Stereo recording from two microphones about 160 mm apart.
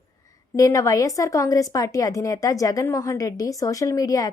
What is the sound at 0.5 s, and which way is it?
Speech, 20° left (ahead or behind).